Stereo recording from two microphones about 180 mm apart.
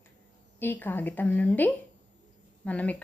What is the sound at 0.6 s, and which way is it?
A woman's voice, 10° left (ahead or behind).